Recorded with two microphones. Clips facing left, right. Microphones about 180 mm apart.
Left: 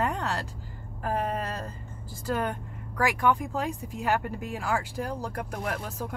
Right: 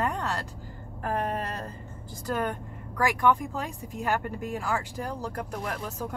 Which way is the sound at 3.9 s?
50° right (ahead or behind).